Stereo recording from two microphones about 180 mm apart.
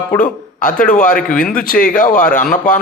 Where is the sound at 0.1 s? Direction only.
45° left (ahead or behind).